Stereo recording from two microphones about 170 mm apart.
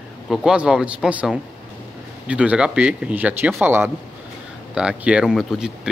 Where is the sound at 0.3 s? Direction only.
5° right (ahead or behind).